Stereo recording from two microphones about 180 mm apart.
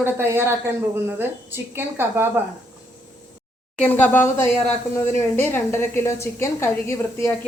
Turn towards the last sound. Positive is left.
turn(degrees=15)  # may be behind; listen again after turning